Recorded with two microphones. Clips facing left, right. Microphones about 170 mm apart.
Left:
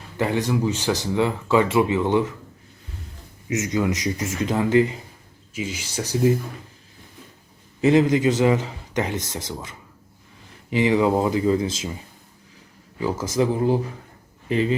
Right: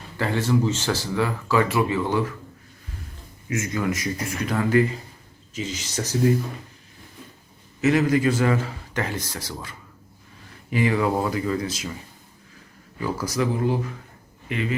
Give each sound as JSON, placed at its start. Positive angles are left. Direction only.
{"t": 0.2, "sound": "speech", "side_deg": 15}
{"t": 3.5, "sound": "speech", "side_deg": 20}
{"t": 5.5, "sound": "speech", "side_deg": 10}
{"t": 7.8, "sound": "speech", "side_deg": 25}
{"t": 13.0, "sound": "speech", "side_deg": 20}